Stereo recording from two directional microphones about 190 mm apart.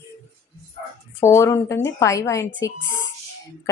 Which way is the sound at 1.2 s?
15° left (ahead or behind).